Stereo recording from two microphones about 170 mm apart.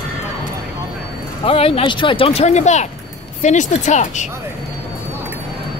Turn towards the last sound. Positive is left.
turn(degrees=45)  # may be behind; listen again after turning